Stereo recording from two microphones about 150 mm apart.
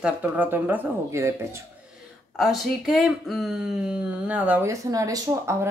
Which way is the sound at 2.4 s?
Centre (ahead or behind).